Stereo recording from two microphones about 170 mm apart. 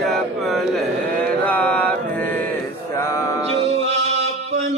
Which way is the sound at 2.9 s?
15° left (ahead or behind).